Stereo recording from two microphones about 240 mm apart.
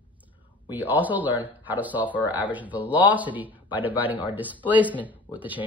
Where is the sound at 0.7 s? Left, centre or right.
Centre.